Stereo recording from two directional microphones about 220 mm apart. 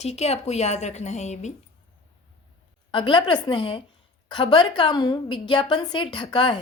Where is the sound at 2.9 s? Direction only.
20° left (ahead or behind).